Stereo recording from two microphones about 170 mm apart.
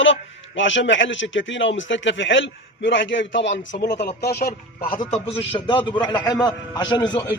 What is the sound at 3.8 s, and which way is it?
A man's voice, 75° left (ahead or behind).